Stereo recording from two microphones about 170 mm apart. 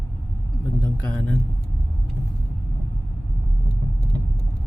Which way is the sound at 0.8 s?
10° left (ahead or behind).